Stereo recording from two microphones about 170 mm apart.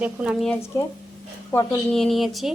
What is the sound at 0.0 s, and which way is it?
Speech, 5° right (ahead or behind).